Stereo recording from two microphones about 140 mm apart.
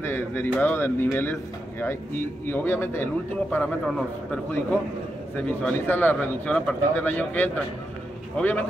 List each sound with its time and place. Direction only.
0.0 s speech: 15° left (ahead or behind)